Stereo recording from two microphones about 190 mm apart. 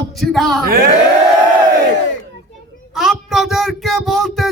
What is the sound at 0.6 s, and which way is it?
Speech, 50° right (ahead or behind).